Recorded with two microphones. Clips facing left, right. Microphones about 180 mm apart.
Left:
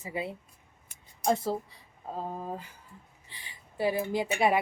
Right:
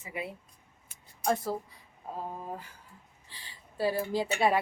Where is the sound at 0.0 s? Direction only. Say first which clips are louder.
Left 3 dB; 30° left (ahead or behind).